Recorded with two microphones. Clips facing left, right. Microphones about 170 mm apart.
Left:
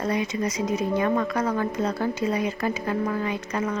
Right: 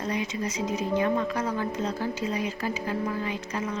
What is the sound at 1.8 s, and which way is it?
Speech, 50° left (ahead or behind).